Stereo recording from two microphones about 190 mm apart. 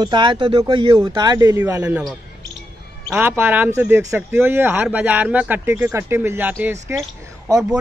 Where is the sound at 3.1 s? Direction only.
10° right (ahead or behind).